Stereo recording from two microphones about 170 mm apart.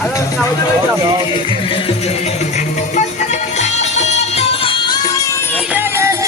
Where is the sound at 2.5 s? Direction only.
45° left (ahead or behind); by 5.6 s 15° left (ahead or behind).